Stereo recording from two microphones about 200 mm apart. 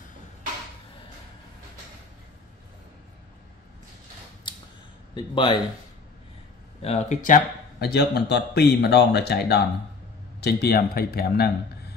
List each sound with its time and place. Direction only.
5.1 s speech: 25° left (ahead or behind)
6.8 s speech: 35° left (ahead or behind)
7.9 s speech: 55° left (ahead or behind)